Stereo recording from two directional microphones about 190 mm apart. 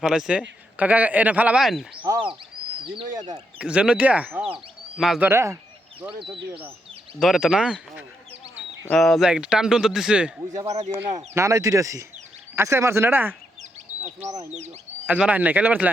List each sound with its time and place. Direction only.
0.0 s a man's voice: 5° right (ahead or behind)
2.8 s speech: 25° right (ahead or behind)
3.6 s a man's voice: 5° right (ahead or behind)
5.3 s a man's voice: 15° right (ahead or behind)
10.5 s speech: 15° right (ahead or behind)
13.6 s duck: 35° right (ahead or behind)
14.5 s speech: 35° right (ahead or behind)
15.0 s speech: 5° right (ahead or behind)